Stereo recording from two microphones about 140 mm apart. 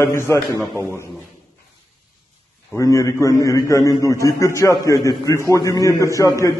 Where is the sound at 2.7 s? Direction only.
25° left (ahead or behind).